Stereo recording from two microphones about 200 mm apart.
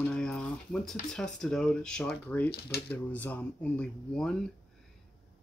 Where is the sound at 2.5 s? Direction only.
50° left (ahead or behind).